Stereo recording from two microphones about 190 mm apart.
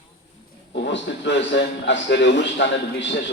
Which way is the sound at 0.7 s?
65° left (ahead or behind).